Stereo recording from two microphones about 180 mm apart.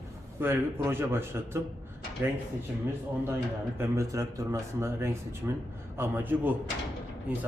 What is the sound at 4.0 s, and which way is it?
Speech, 15° right (ahead or behind).